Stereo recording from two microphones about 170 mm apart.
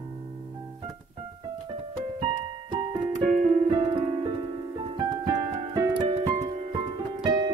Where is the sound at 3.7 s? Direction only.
30° right (ahead or behind).